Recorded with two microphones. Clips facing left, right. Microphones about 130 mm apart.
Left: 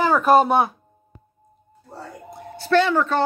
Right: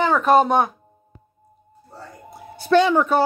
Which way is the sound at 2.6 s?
15° right (ahead or behind).